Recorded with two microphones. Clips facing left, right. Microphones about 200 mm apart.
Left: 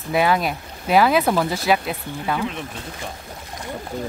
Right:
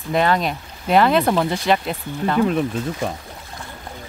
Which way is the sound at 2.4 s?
45° right (ahead or behind).